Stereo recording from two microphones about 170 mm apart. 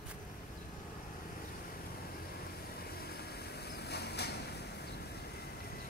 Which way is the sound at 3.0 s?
70° left (ahead or behind).